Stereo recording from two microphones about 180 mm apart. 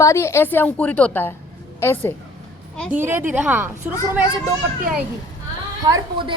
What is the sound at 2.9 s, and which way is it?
A woman's voice, 10° right (ahead or behind).